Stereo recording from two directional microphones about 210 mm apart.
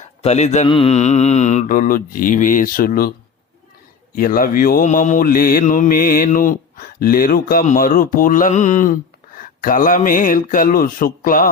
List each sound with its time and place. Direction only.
0.2 s mantra: 30° left (ahead or behind)
4.1 s mantra: 45° left (ahead or behind)